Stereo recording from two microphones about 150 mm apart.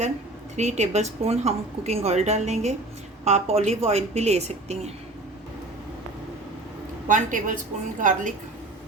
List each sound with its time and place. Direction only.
0.5 s a woman's voice: 50° right (ahead or behind)
7.1 s a woman's voice: 60° right (ahead or behind)